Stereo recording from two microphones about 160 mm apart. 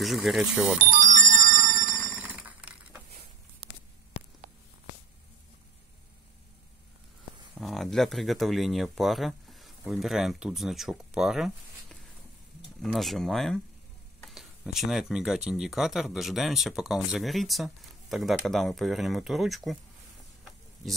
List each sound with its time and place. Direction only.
0.0 s speech: centre (ahead or behind)
0.9 s music: 55° right (ahead or behind)
2.3 s a sound: 10° right (ahead or behind)
7.6 s speech: centre (ahead or behind)